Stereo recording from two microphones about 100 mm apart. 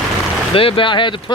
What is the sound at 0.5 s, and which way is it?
Speech, 60° left (ahead or behind).